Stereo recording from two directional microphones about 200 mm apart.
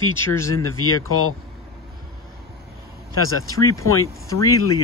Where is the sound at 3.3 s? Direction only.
90° left.